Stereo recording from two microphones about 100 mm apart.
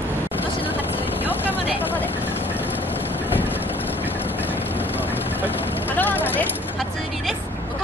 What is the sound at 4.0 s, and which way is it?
Vehicle, 20° left (ahead or behind).